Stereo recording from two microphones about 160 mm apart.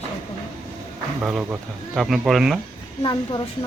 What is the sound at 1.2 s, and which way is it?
Speech, 5° right (ahead or behind).